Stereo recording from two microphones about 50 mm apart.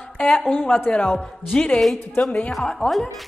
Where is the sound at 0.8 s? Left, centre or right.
Left.